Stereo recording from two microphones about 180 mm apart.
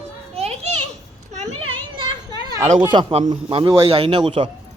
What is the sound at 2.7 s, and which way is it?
A man's voice, 25° right (ahead or behind).